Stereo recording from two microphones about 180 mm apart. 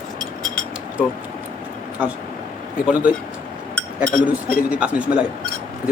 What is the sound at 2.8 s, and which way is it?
Speech, 10° right (ahead or behind).